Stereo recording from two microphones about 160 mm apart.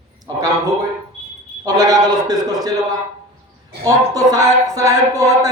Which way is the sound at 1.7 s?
25° right (ahead or behind).